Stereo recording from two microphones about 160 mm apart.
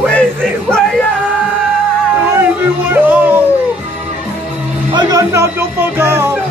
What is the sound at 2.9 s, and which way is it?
Music, 10° right (ahead or behind).